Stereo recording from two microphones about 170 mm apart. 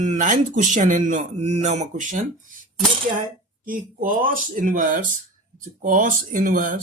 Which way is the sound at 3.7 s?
55° right (ahead or behind).